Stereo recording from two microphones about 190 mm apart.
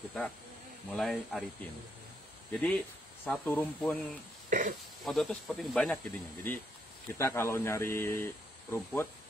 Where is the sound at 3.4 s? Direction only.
10° left (ahead or behind).